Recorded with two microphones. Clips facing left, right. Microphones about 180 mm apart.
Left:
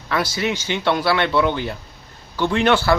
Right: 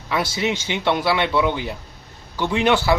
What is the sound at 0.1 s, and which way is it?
Speech, 20° right (ahead or behind).